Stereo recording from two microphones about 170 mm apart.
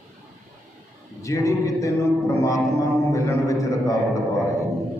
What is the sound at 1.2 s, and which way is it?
A man's voice, 20° left (ahead or behind).